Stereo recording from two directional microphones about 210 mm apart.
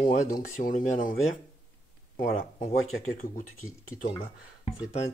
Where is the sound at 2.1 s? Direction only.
40° left (ahead or behind).